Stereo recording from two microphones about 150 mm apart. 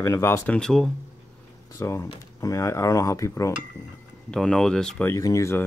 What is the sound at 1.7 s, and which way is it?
Speech, 20° left (ahead or behind).